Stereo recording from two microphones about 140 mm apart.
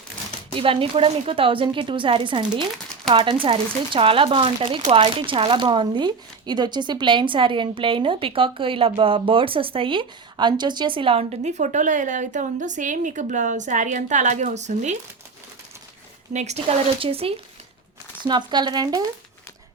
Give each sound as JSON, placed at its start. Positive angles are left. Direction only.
{"t": 0.5, "sound": "speech", "side_deg": -40}
{"t": 16.3, "sound": "speech", "side_deg": -55}
{"t": 18.2, "sound": "speech", "side_deg": -30}